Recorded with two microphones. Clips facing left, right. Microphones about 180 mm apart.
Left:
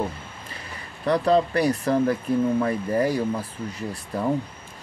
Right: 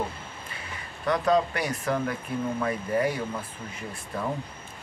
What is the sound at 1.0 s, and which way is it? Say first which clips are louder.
Speech: left 3 dB; 35° left (ahead or behind).